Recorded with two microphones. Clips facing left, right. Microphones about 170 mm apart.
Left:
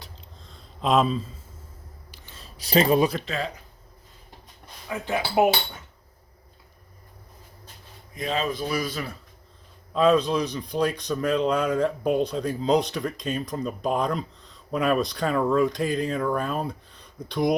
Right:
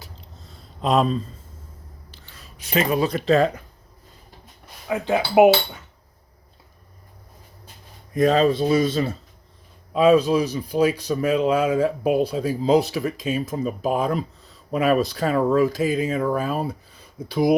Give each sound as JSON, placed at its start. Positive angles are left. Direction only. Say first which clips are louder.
{"t": 0.0, "sound": "a sound", "louder": "right 2 dB", "side_deg": -5}
{"t": 2.3, "sound": "a sound", "louder": "left 2 dB", "side_deg": 30}
{"t": 4.9, "sound": "speech", "louder": "right 6 dB", "side_deg": -20}
{"t": 8.1, "sound": "speech", "louder": "right 10 dB", "side_deg": -45}
{"t": 8.4, "sound": "speech", "louder": "right 9 dB", "side_deg": -30}
{"t": 9.9, "sound": "speech", "louder": "right 4 dB", "side_deg": -10}